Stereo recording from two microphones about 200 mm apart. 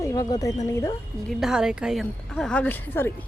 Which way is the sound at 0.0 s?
15° left (ahead or behind).